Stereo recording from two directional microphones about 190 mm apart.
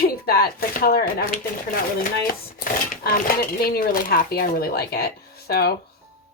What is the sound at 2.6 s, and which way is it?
Speech, 45° left (ahead or behind).